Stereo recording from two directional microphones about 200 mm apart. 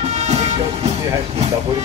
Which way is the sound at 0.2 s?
35° right (ahead or behind).